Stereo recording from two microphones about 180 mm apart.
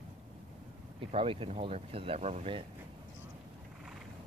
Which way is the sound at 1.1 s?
30° right (ahead or behind).